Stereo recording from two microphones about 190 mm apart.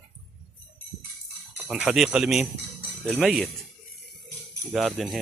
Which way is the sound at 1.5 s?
5° right (ahead or behind).